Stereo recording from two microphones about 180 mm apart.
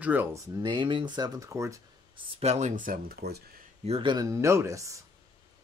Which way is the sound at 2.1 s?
35° right (ahead or behind).